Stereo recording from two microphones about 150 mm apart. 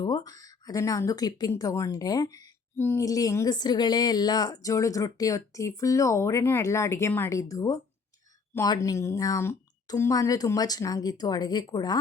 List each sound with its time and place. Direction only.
0.0 s speech: 25° left (ahead or behind)